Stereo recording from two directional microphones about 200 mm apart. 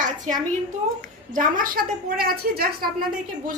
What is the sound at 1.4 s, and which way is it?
A woman's voice, 45° right (ahead or behind).